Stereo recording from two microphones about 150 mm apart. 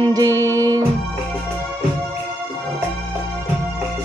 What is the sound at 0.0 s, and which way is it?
Music, 25° right (ahead or behind).